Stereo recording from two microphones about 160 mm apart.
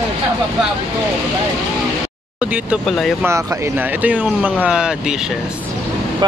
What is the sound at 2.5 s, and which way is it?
Speech, 5° right (ahead or behind).